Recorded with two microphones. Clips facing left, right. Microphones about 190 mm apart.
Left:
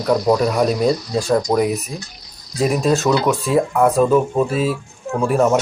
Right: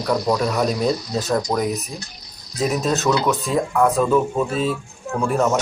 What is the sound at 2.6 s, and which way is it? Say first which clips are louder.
Speech: left 4 dB; centre (ahead or behind).